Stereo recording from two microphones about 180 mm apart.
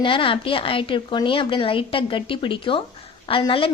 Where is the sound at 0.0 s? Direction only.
30° left (ahead or behind).